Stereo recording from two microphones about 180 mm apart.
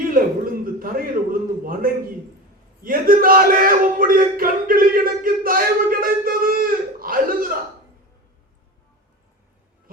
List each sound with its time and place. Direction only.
0.6 s a man's voice: 55° right (ahead or behind)